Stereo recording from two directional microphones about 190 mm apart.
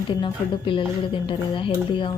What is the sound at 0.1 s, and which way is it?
Speech, 25° left (ahead or behind).